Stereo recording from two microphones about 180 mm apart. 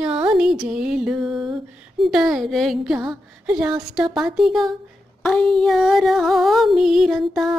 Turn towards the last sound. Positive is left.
turn(degrees=0)  # may be behind; listen again after turning